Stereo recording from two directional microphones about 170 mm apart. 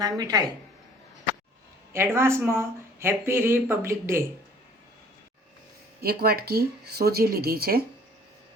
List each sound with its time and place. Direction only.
0.0 s a woman's voice: 20° right (ahead or behind)
1.9 s speech: 15° right (ahead or behind)
6.0 s speech: 65° right (ahead or behind)